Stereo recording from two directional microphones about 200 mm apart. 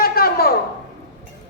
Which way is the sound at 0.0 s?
50° left (ahead or behind).